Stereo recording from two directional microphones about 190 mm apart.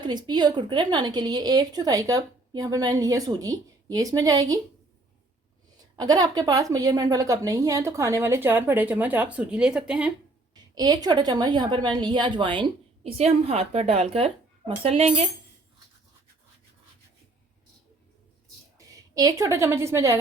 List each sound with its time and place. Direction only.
0.0 s a woman's voice: 20° right (ahead or behind)
6.0 s a woman's voice: 20° right (ahead or behind); by 10.1 s 5° right (ahead or behind)
10.5 s a woman's voice: 20° right (ahead or behind)
19.1 s a woman's voice: 20° right (ahead or behind)